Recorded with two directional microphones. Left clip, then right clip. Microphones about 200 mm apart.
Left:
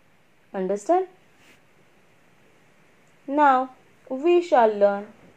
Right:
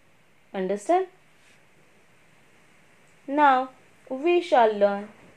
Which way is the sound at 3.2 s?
25° left (ahead or behind).